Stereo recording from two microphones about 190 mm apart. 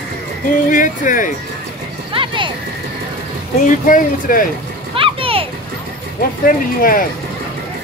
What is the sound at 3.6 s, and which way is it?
Speech, 45° left (ahead or behind).